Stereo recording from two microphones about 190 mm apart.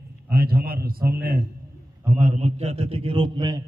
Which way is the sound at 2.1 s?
40° right (ahead or behind).